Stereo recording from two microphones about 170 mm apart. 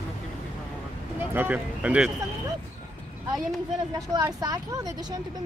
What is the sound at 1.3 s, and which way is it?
Speech, 10° right (ahead or behind).